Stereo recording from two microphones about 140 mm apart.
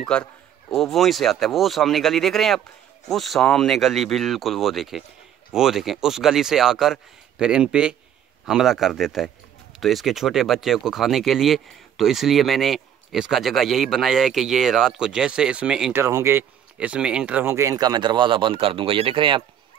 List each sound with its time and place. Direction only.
0.0 s a man's voice: 5° left (ahead or behind)
15.9 s speech: 20° right (ahead or behind)
16.7 s speech: 10° right (ahead or behind); by 19.4 s 35° right (ahead or behind)